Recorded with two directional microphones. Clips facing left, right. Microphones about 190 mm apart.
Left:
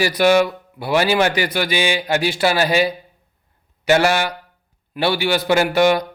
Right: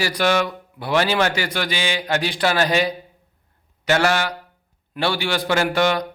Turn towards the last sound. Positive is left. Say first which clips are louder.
# left 4 dB
turn(degrees=10)  # may be behind; listen again after turning